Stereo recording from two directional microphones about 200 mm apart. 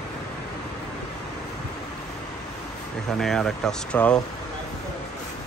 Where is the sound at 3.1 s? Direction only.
Centre (ahead or behind).